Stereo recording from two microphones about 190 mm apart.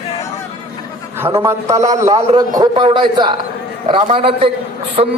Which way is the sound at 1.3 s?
20° right (ahead or behind).